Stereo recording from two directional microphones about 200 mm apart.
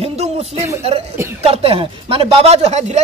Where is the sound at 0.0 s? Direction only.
30° right (ahead or behind).